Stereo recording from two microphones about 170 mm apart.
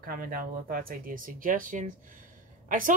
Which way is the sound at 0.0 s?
60° right (ahead or behind).